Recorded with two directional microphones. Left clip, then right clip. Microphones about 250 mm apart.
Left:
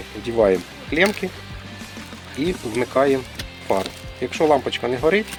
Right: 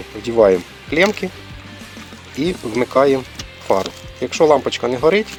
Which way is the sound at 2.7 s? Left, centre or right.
Right.